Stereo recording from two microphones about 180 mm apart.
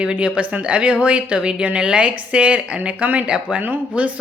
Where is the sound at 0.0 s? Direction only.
5° right (ahead or behind).